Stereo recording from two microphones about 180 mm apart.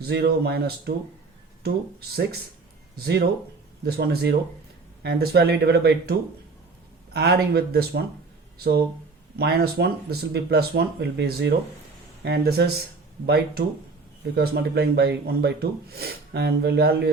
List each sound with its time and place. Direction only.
0.0 s speech: 60° right (ahead or behind)